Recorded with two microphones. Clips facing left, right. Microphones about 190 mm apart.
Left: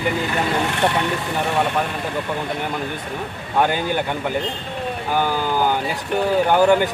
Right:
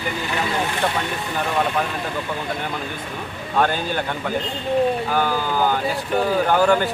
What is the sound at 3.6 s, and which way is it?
Speech, 15° left (ahead or behind).